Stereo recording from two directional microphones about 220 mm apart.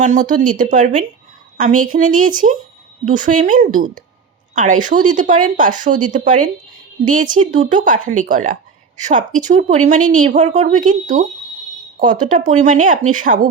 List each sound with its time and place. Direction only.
0.0 s speech: 35° right (ahead or behind)